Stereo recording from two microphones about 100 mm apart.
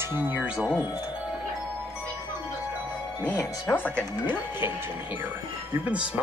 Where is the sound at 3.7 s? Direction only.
20° left (ahead or behind).